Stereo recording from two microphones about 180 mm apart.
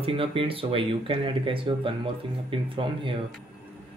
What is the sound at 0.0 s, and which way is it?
Speech, 30° right (ahead or behind).